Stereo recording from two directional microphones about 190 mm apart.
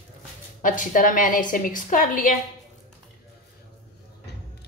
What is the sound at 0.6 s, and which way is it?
A woman's voice, 45° left (ahead or behind).